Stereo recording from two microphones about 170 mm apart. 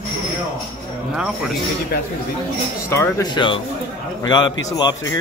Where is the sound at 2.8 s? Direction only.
15° left (ahead or behind).